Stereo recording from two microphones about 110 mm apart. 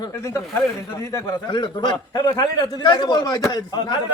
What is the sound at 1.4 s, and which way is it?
A man's voice, 45° left (ahead or behind).